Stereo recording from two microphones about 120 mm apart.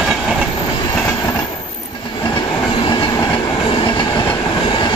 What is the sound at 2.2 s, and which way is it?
Train, 40° left (ahead or behind).